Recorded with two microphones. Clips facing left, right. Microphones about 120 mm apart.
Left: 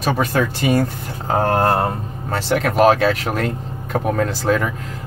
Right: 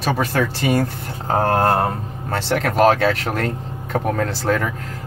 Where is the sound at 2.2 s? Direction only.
10° left (ahead or behind).